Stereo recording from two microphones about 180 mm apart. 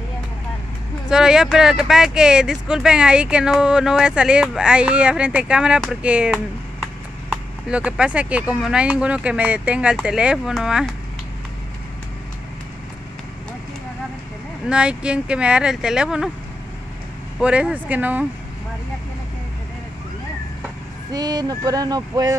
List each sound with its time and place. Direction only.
1.0 s speech: 5° right (ahead or behind)
14.7 s speech: 5° right (ahead or behind)
17.4 s speech: 5° right (ahead or behind)
21.1 s speech: 20° right (ahead or behind)